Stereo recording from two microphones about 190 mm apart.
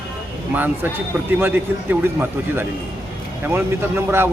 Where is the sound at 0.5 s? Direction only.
10° right (ahead or behind).